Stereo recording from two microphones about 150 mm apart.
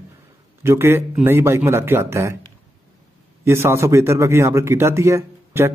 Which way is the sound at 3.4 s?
15° right (ahead or behind).